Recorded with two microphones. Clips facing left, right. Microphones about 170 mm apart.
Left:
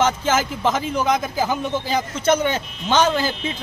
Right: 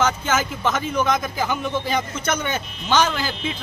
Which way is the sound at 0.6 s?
30° left (ahead or behind).